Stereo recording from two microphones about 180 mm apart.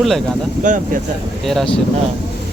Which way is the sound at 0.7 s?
45° right (ahead or behind).